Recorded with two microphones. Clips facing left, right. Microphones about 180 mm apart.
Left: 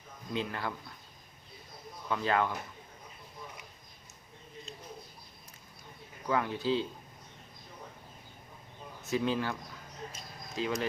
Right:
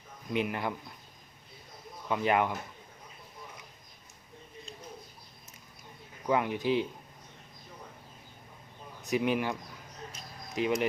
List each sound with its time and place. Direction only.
0.3 s speech: 15° right (ahead or behind)
2.0 s speech: 15° right (ahead or behind)
6.2 s speech: 15° right (ahead or behind)
9.0 s speech: 15° right (ahead or behind)